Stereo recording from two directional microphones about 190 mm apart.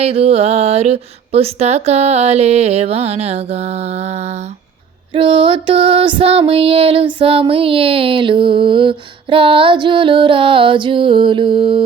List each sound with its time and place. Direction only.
0.0 s speech: 30° right (ahead or behind)
5.1 s music: 30° right (ahead or behind)